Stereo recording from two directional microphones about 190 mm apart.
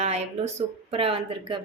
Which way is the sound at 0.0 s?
35° right (ahead or behind).